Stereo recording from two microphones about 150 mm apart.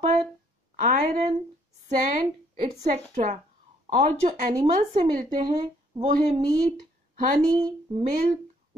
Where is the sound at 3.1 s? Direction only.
55° right (ahead or behind).